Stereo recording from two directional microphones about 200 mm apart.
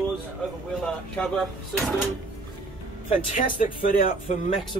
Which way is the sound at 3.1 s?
40° left (ahead or behind).